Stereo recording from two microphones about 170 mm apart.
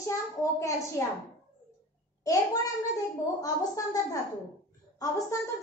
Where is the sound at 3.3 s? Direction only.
20° left (ahead or behind).